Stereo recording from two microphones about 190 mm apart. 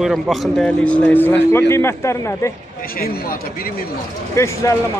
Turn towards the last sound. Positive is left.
turn(degrees=15)  # may be behind; listen again after turning